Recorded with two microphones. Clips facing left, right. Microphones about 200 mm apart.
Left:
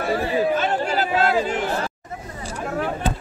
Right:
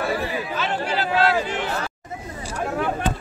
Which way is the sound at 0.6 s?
45° left (ahead or behind).